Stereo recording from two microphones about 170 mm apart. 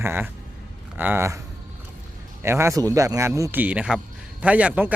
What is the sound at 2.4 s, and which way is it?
A man's voice, 15° right (ahead or behind).